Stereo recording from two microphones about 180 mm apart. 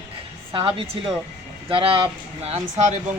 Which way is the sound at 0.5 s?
30° right (ahead or behind).